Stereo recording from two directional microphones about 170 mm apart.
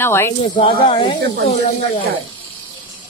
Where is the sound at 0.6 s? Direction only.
30° left (ahead or behind).